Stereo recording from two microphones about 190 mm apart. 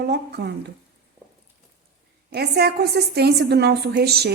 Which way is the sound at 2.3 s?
60° right (ahead or behind).